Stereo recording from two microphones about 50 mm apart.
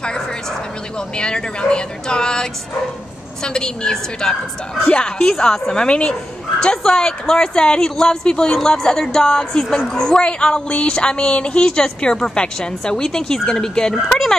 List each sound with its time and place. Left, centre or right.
0.9 s speech: centre